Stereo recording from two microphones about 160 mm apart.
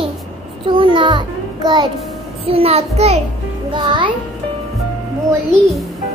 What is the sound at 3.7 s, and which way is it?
Speech, 30° right (ahead or behind).